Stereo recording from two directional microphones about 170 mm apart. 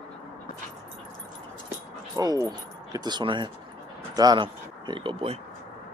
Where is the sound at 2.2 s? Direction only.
25° right (ahead or behind).